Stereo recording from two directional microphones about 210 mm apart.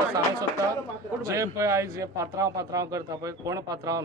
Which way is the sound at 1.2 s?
15° right (ahead or behind).